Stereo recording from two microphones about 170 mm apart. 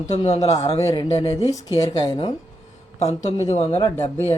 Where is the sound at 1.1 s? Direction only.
35° left (ahead or behind).